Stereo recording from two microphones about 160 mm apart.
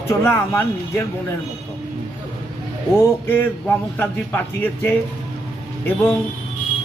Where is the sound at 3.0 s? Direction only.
15° left (ahead or behind).